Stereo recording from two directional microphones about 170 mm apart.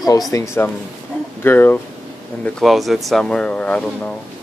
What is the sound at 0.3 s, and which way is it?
Speech, 20° left (ahead or behind).